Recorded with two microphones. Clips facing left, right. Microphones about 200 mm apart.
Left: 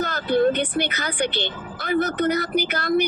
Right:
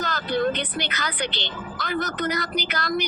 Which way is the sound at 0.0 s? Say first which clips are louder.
Left 5 dB; 55° left (ahead or behind).